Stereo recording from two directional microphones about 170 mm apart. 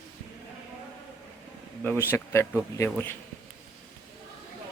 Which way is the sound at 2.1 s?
15° left (ahead or behind).